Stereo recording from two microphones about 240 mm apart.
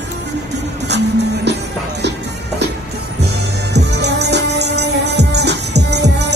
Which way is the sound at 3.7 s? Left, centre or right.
Right.